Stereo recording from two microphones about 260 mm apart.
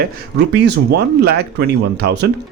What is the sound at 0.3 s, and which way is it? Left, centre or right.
Speech, right.